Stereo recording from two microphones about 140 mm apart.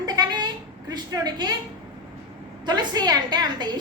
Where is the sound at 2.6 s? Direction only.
30° right (ahead or behind).